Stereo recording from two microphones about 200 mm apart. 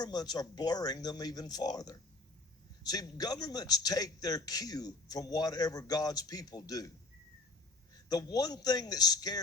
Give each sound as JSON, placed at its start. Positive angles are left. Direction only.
{"t": 0.0, "sound": "a man's voice", "side_deg": 20}
{"t": 8.1, "sound": "a man's voice", "side_deg": 20}